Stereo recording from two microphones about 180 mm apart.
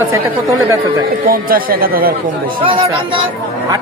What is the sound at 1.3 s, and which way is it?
Speech, 55° right (ahead or behind).